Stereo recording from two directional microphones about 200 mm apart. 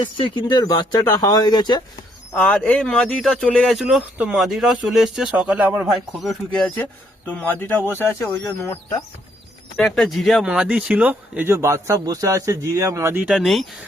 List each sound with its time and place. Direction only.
0.0 s speech: 25° left (ahead or behind)
2.3 s speech: 5° left (ahead or behind)
9.7 s speech: centre (ahead or behind)